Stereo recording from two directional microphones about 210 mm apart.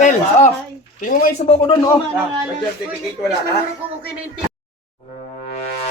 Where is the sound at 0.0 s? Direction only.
35° left (ahead or behind).